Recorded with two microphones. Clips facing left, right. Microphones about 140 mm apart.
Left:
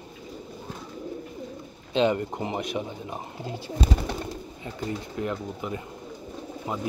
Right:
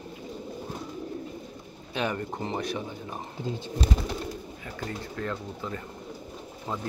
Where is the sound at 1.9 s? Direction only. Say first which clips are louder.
Left 7 dB; 20° left (ahead or behind).